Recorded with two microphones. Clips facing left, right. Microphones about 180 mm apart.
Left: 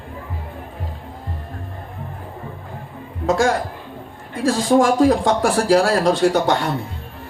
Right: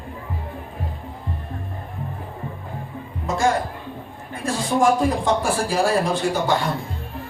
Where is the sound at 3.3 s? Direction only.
90° left; by 6.6 s 75° left (ahead or behind).